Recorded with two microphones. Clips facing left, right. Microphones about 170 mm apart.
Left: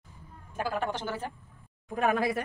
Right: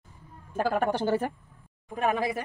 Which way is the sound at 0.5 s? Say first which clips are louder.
Right 5 dB; 45° right (ahead or behind).